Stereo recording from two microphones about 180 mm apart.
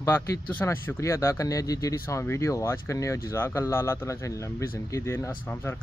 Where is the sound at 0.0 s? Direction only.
15° left (ahead or behind).